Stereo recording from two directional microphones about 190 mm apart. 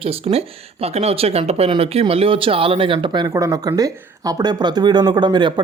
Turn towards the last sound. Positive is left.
turn(degrees=-25)  # may be behind; listen again after turning